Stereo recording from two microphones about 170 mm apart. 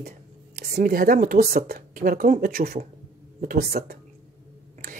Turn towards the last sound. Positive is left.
turn(degrees=-65)  # may be behind; listen again after turning